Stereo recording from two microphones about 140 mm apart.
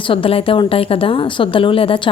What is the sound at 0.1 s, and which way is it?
Speech, 40° left (ahead or behind).